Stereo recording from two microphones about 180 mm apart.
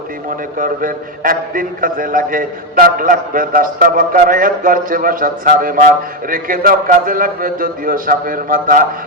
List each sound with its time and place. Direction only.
0.5 s a man's voice: 50° right (ahead or behind)